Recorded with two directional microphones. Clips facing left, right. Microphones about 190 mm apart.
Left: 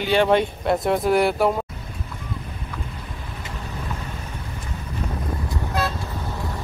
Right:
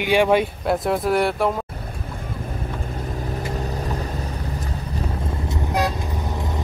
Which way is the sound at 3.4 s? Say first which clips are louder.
Right 7 dB; 40° right (ahead or behind).